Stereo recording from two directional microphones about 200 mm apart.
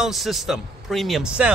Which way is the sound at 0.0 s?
Centre (ahead or behind).